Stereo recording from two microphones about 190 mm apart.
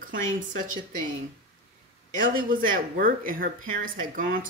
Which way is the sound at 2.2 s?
45° right (ahead or behind).